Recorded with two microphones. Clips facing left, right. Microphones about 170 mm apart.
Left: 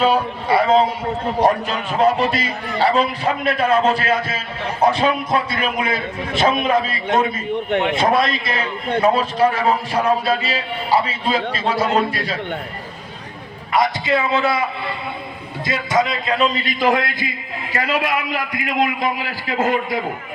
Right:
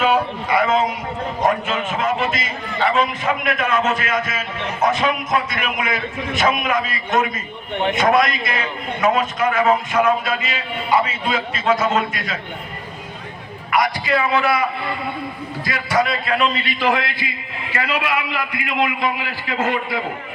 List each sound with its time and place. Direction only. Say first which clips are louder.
0.0 s a man's voice: left 1 dB; 30° left (ahead or behind)
13.7 s a man's voice: left 1 dB; 25° left (ahead or behind)
16.6 s a man's voice: left 2 dB; 40° left (ahead or behind)